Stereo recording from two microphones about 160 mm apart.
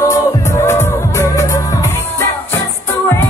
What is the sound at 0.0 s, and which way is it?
Music, 15° left (ahead or behind).